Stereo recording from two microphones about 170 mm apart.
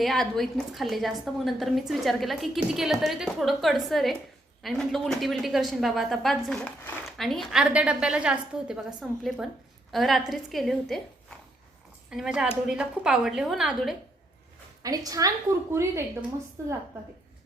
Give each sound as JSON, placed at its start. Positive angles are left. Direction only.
{"t": 0.0, "sound": "a woman's voice", "side_deg": 0}
{"t": 12.1, "sound": "a woman's voice", "side_deg": -5}
{"t": 14.8, "sound": "a woman's voice", "side_deg": -20}